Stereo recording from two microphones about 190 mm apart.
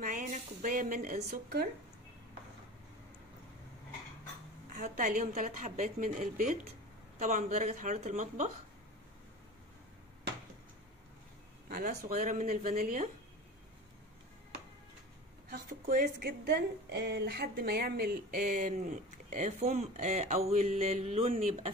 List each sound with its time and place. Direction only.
0.0 s speech: 45° right (ahead or behind)
4.7 s a woman's voice: 45° right (ahead or behind)
11.7 s a woman's voice: 50° right (ahead or behind)
15.5 s a woman's voice: 50° right (ahead or behind); by 21.5 s 35° right (ahead or behind)